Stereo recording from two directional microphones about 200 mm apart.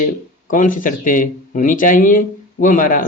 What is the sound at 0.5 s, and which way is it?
Speech, 40° left (ahead or behind).